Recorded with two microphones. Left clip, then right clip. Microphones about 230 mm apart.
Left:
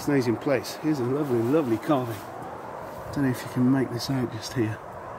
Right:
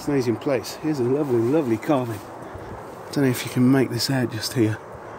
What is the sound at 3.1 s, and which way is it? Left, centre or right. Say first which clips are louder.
Speech: right 6 dB; right.